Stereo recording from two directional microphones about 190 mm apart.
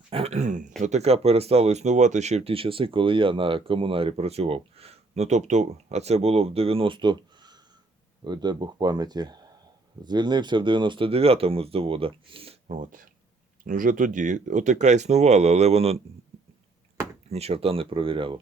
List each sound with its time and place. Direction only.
0.1 s speech: 35° right (ahead or behind)
17.2 s speech: 35° right (ahead or behind)